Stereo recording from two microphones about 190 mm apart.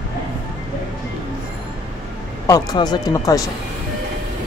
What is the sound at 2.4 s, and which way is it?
Speech, 20° left (ahead or behind).